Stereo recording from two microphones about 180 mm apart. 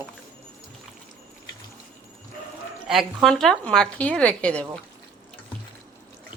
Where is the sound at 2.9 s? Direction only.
Centre (ahead or behind).